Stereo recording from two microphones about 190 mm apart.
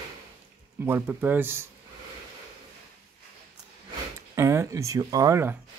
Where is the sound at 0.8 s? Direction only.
10° right (ahead or behind).